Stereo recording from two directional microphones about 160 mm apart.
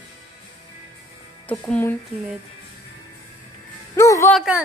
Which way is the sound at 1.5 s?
10° left (ahead or behind).